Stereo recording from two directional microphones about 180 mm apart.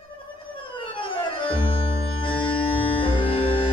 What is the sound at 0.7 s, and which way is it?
Music, 30° left (ahead or behind).